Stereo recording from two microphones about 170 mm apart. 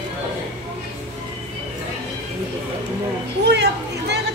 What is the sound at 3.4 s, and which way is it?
Speech, 80° right.